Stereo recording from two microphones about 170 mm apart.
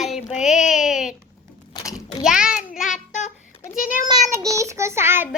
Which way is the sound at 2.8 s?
45° left (ahead or behind).